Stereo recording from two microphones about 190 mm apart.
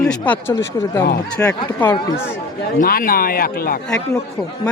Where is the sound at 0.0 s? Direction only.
5° left (ahead or behind).